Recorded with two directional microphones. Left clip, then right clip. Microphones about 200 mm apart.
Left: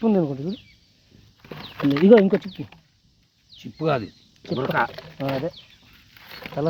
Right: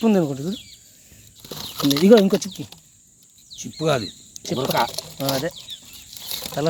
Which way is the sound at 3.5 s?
20° right (ahead or behind).